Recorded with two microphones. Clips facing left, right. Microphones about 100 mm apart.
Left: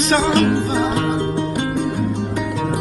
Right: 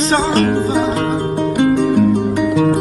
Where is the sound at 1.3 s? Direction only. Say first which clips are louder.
Right 7 dB; 55° right (ahead or behind).